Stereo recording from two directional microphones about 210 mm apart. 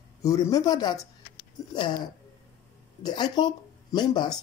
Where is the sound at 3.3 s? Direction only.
20° left (ahead or behind).